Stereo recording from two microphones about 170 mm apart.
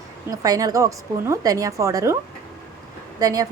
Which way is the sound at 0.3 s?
20° right (ahead or behind).